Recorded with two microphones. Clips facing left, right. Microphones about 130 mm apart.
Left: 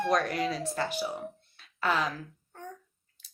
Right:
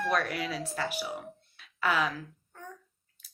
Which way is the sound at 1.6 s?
40° left (ahead or behind).